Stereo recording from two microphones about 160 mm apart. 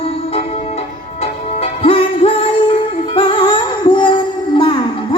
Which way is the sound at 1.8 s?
35° left (ahead or behind).